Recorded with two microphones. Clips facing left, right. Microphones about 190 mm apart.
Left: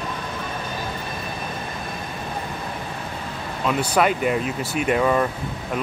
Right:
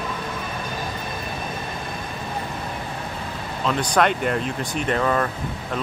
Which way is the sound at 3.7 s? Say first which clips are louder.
Even; 5° left (ahead or behind).